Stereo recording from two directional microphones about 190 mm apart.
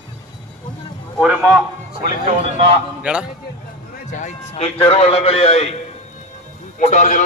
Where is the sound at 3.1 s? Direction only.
5° right (ahead or behind).